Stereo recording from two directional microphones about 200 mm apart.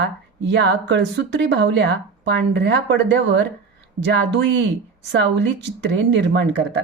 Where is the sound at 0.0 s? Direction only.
60° right (ahead or behind).